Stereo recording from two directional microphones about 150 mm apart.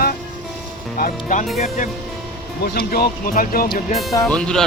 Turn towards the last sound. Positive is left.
turn(degrees=5)  # may be behind; listen again after turning